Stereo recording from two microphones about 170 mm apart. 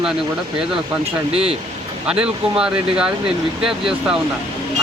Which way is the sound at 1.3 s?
35° right (ahead or behind).